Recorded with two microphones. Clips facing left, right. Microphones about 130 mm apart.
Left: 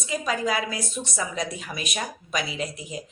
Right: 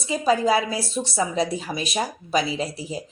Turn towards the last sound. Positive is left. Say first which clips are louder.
# right 4 dB
turn(degrees=-30)  # may be behind; listen again after turning